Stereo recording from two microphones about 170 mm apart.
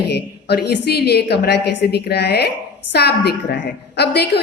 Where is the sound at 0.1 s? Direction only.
75° left (ahead or behind).